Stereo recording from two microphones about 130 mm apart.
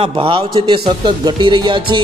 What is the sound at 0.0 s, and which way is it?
A man's voice, 45° right (ahead or behind).